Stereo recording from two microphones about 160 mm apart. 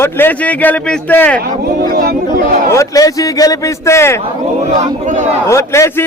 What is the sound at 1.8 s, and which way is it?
Speech, 60° right (ahead or behind).